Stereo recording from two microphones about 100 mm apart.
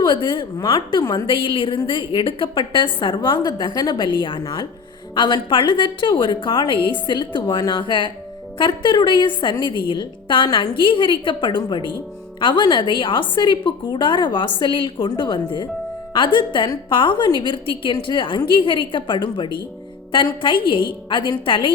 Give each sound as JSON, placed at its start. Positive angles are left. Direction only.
{"t": 0.0, "sound": "a woman's voice", "side_deg": 50}